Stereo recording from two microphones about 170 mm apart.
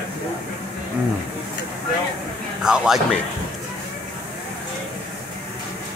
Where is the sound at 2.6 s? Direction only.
5° right (ahead or behind).